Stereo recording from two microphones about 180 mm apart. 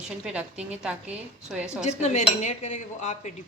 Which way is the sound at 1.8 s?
40° left (ahead or behind).